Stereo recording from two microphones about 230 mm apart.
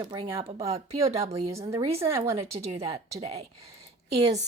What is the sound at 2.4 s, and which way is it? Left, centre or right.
A woman's voice, right.